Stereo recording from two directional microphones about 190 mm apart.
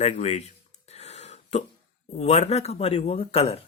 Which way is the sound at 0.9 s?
35° left (ahead or behind).